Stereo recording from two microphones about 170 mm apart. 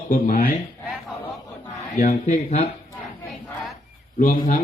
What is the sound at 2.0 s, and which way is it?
Speech, 45° left (ahead or behind).